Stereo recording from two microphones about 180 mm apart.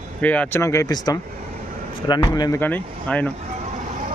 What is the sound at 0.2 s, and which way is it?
A man's voice, 10° left (ahead or behind).